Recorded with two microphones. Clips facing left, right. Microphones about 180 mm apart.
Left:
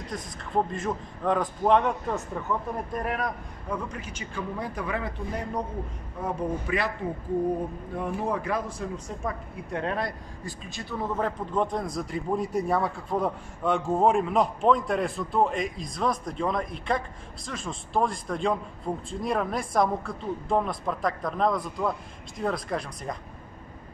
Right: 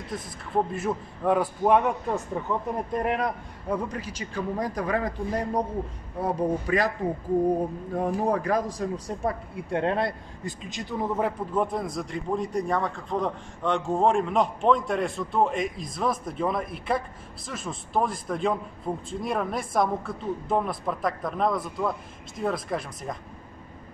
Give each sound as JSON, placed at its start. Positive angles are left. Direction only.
{"t": 0.7, "sound": "a man's voice", "side_deg": -5}
{"t": 2.9, "sound": "a man's voice", "side_deg": -25}
{"t": 7.9, "sound": "speech", "side_deg": -40}